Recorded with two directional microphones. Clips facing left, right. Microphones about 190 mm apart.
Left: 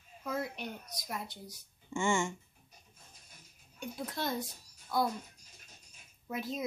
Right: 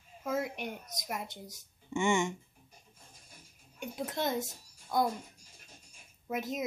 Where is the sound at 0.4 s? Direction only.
20° right (ahead or behind).